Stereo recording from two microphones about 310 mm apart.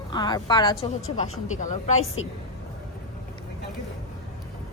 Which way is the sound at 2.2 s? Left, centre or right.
Left.